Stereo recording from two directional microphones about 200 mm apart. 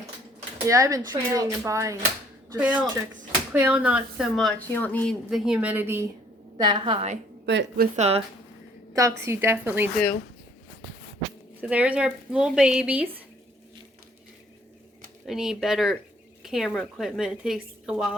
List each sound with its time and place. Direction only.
0.7 s a woman's voice: 15° right (ahead or behind)
7.4 s a woman's voice: 60° right (ahead or behind)
7.9 s speech: 30° right (ahead or behind)
9.0 s a woman's voice: 15° right (ahead or behind)
11.6 s a woman's voice: 5° right (ahead or behind)
15.3 s a woman's voice: centre (ahead or behind)